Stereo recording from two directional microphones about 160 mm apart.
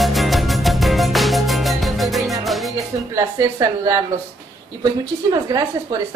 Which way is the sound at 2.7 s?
20° right (ahead or behind).